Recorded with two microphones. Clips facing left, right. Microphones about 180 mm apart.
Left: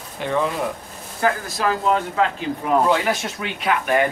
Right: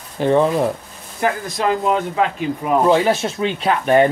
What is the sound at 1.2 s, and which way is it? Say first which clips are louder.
Speech: right 2 dB; 20° right (ahead or behind).